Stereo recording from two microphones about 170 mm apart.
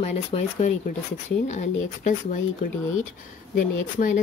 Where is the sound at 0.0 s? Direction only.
40° left (ahead or behind).